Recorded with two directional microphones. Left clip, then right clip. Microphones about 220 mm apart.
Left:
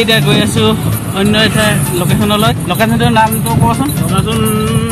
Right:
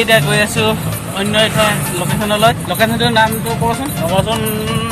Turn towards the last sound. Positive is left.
turn(degrees=20)  # may be behind; listen again after turning